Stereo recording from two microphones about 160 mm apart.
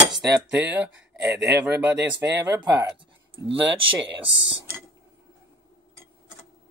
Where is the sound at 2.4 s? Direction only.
20° right (ahead or behind).